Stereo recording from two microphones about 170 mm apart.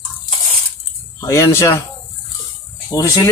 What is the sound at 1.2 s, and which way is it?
Speech, 20° left (ahead or behind).